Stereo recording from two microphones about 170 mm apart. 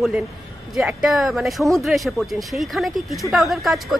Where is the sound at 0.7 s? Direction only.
5° right (ahead or behind).